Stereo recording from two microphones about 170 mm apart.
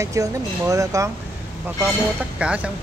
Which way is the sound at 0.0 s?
20° right (ahead or behind).